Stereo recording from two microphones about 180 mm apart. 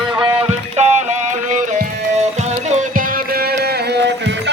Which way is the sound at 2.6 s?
55° right (ahead or behind).